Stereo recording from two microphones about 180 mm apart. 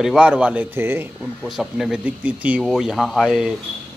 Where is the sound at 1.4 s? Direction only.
Centre (ahead or behind).